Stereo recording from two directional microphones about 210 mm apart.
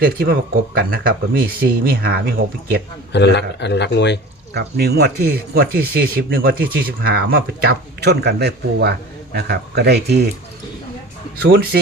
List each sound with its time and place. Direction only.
0.0 s speech: 45° right (ahead or behind)
3.1 s a man's voice: 55° left (ahead or behind)
4.5 s speech: 50° right (ahead or behind)
11.3 s speech: 50° right (ahead or behind)